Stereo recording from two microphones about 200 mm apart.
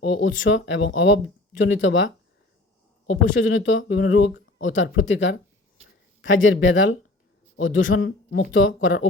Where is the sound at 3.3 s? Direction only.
70° left (ahead or behind).